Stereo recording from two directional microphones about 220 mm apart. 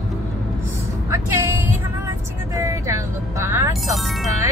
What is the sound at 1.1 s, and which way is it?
Vehicle, 15° right (ahead or behind).